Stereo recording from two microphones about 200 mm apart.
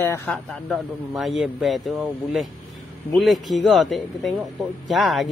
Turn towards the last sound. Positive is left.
turn(degrees=0)  # may be behind; listen again after turning